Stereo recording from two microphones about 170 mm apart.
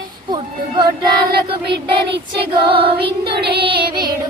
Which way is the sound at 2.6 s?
30° right (ahead or behind).